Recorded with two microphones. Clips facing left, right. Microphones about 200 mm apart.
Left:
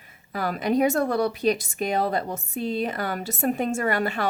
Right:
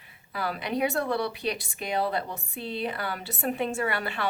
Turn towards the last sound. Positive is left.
turn(degrees=45)  # may be behind; listen again after turning